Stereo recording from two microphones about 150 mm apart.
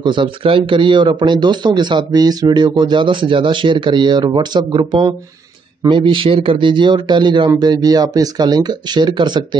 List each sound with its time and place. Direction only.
0.0 s speech: 35° right (ahead or behind)